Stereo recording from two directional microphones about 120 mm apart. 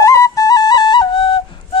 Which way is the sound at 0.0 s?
25° left (ahead or behind).